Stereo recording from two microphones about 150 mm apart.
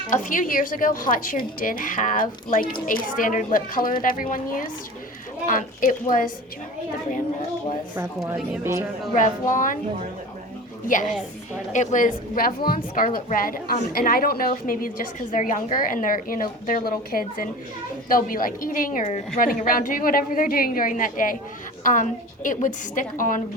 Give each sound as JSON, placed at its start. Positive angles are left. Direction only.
{"t": 0.1, "sound": "a woman's voice", "side_deg": 60}
{"t": 9.1, "sound": "a woman's voice", "side_deg": 60}
{"t": 10.8, "sound": "a woman's voice", "side_deg": 60}